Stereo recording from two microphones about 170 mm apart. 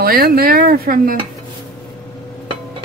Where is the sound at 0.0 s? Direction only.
60° right (ahead or behind).